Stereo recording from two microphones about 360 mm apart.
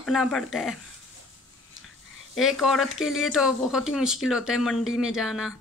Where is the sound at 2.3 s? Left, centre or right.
Centre.